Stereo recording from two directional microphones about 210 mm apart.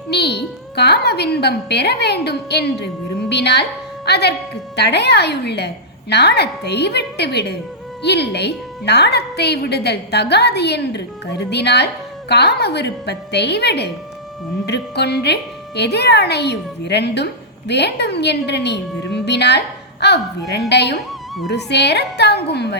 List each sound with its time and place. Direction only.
0.1 s a woman's voice: 50° left (ahead or behind)